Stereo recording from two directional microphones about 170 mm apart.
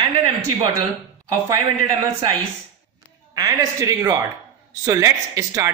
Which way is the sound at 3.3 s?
20° right (ahead or behind).